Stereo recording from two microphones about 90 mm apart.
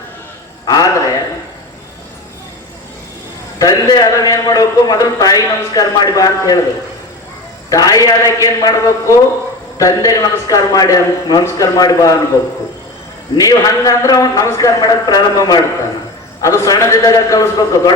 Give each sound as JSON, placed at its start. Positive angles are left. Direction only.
{"t": 0.6, "sound": "a man's voice", "side_deg": 45}
{"t": 3.6, "sound": "a man's voice", "side_deg": 45}
{"t": 7.7, "sound": "a man's voice", "side_deg": 40}
{"t": 13.3, "sound": "a man's voice", "side_deg": 45}